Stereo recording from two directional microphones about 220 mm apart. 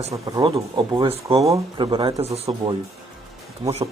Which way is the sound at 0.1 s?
15° right (ahead or behind).